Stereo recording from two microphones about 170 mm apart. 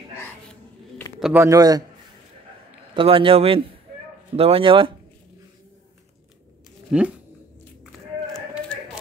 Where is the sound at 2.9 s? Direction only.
30° right (ahead or behind).